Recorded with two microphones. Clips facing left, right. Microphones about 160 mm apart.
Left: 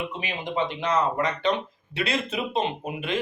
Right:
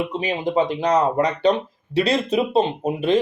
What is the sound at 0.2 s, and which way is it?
Speech, 35° right (ahead or behind).